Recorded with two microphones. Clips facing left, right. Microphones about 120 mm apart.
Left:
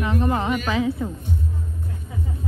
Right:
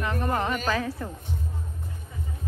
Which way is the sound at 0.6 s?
20° left (ahead or behind).